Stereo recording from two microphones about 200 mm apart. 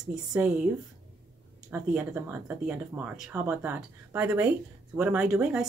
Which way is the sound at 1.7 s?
10° right (ahead or behind).